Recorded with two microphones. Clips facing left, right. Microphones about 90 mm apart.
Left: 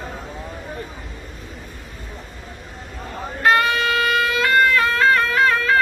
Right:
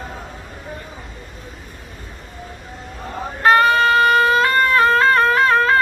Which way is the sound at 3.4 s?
35° right (ahead or behind).